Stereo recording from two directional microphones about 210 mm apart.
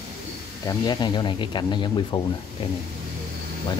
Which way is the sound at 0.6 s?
20° left (ahead or behind).